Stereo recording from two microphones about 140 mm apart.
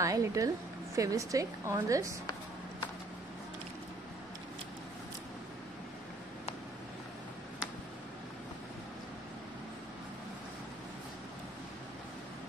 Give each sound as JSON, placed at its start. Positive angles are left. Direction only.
{"t": 0.0, "sound": "a woman's voice", "side_deg": -25}